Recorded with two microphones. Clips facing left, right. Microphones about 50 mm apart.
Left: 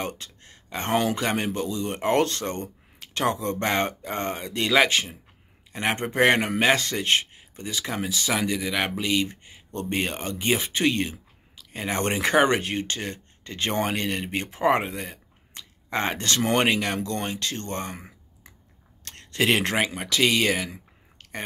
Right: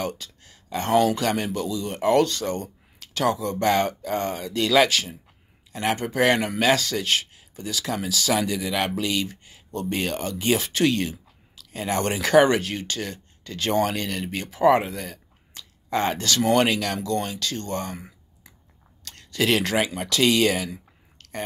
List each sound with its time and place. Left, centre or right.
0.0 s speech: left
19.0 s speech: left
20.0 s speech: centre